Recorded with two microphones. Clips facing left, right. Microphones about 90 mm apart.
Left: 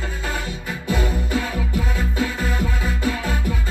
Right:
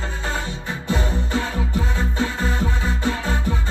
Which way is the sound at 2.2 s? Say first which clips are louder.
Even; 30° right (ahead or behind).